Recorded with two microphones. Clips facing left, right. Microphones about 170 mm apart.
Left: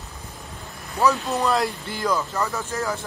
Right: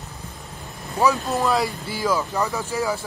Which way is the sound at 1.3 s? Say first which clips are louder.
Right 1 dB; centre (ahead or behind).